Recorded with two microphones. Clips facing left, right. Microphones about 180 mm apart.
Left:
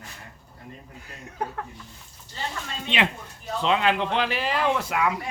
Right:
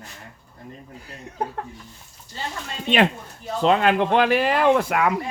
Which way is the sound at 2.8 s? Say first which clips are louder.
Right 7 dB; 45° right (ahead or behind).